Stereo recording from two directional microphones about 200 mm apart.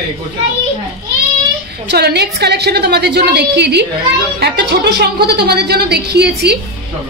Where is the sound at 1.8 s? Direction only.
55° right (ahead or behind).